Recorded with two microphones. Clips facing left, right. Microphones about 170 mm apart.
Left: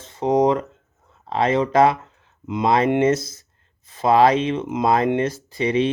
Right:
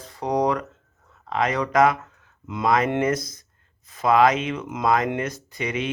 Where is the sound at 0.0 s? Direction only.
25° left (ahead or behind).